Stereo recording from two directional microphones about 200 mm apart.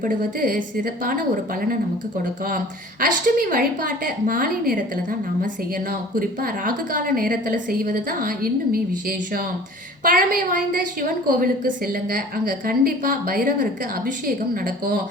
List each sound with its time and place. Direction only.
0.0 s a woman's voice: 40° right (ahead or behind)
3.0 s a woman's voice: 45° right (ahead or behind)
5.9 s a woman's voice: 45° right (ahead or behind)